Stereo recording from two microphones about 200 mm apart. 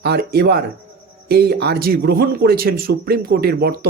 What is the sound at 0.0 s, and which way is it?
Speech, 50° right (ahead or behind).